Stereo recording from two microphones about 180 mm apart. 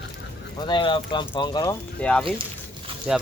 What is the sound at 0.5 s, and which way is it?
Speech, 25° left (ahead or behind).